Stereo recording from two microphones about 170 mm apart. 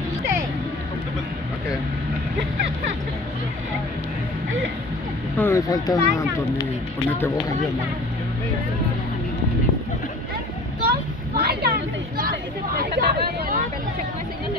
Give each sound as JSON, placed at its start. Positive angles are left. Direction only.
{"t": 5.4, "sound": "speech", "side_deg": 20}
{"t": 10.8, "sound": "a sound", "side_deg": -65}
{"t": 12.3, "sound": "speech", "side_deg": -60}